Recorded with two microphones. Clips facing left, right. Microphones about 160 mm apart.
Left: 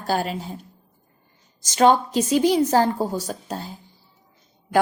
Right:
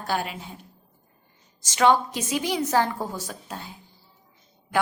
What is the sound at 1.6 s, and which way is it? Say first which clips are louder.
A woman's voice: left 3 dB; 30° left (ahead or behind).